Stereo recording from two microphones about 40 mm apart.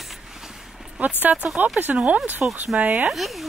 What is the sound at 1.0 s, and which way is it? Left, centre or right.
Speech, right.